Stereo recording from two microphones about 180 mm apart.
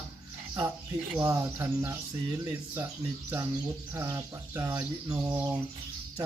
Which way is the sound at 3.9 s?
15° right (ahead or behind).